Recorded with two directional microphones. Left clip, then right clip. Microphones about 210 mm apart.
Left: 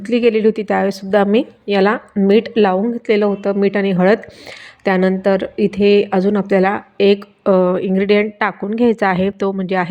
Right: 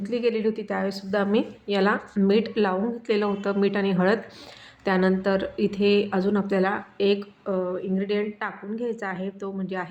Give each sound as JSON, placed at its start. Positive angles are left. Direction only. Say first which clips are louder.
{"t": 0.0, "sound": "speech", "louder": "left 11 dB", "side_deg": 30}